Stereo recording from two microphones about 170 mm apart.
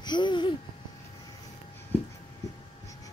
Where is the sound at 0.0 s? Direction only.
25° left (ahead or behind).